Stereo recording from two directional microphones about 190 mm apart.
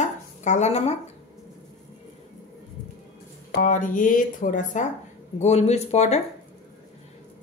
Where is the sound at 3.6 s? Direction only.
45° left (ahead or behind).